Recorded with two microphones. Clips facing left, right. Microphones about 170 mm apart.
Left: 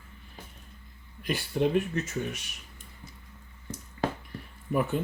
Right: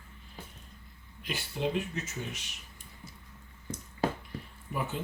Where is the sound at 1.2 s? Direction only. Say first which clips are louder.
Left 6 dB; 55° left (ahead or behind).